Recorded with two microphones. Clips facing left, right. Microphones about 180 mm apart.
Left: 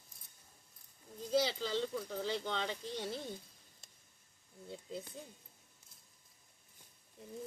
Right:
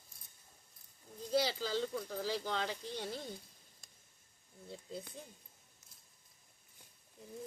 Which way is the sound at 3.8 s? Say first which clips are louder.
Left 1 dB; 25° left (ahead or behind).